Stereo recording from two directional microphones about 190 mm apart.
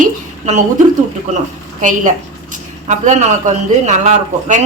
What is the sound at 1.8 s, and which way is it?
A woman's voice, 40° right (ahead or behind).